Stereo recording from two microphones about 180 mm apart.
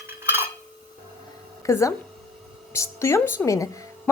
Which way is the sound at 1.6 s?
15° left (ahead or behind).